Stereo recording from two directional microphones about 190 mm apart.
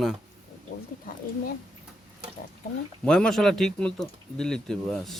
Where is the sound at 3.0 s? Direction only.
5° left (ahead or behind).